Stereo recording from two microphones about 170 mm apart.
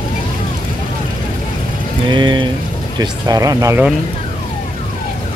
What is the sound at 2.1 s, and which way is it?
Speech, 25° right (ahead or behind).